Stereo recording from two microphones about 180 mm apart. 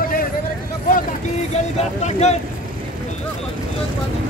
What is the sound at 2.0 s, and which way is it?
Speech, 40° left (ahead or behind).